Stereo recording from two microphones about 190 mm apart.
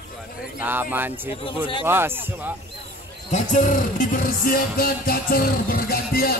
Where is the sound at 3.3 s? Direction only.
40° left (ahead or behind).